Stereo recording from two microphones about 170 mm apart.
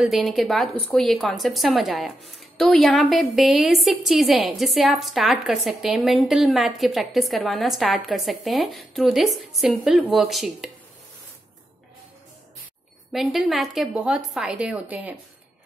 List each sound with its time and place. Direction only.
0.0 s a woman's voice: centre (ahead or behind)
13.1 s a woman's voice: centre (ahead or behind)